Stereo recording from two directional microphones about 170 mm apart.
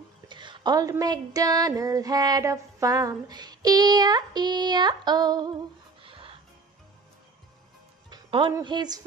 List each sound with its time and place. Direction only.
0.3 s speech: 25° right (ahead or behind)
6.0 s music: 30° right (ahead or behind)
8.1 s music: 25° right (ahead or behind)
8.6 s speech: 25° right (ahead or behind)